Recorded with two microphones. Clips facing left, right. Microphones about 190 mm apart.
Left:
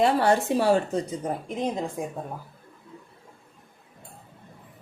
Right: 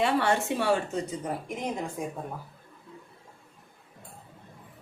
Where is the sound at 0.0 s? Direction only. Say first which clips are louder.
Left 4 dB; 40° left (ahead or behind).